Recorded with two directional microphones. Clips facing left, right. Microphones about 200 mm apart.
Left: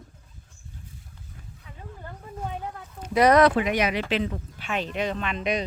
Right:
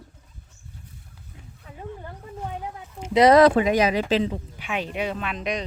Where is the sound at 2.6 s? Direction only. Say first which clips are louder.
Right 1 dB; 10° right (ahead or behind).